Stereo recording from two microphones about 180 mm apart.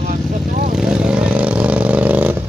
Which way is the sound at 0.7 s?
5° right (ahead or behind).